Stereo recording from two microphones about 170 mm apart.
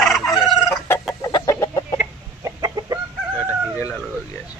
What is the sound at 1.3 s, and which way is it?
Chicken, 20° left (ahead or behind).